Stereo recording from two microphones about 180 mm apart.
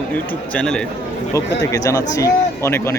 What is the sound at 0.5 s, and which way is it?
Speech, 5° left (ahead or behind).